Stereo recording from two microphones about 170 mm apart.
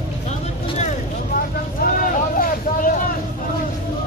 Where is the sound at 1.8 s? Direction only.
55° left (ahead or behind).